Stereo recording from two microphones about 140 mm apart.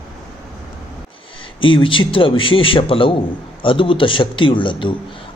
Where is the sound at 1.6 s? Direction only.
35° left (ahead or behind).